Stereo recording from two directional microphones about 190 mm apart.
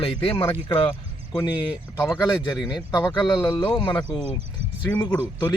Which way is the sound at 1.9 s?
15° left (ahead or behind).